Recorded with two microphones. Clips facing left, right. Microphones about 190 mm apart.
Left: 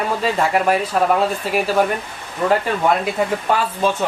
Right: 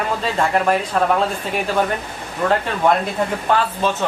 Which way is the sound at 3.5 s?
5° left (ahead or behind).